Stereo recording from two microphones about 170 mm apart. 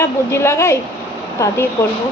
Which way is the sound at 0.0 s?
15° left (ahead or behind).